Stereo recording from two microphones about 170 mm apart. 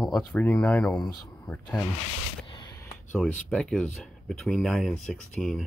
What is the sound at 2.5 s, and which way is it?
Speech, 20° left (ahead or behind).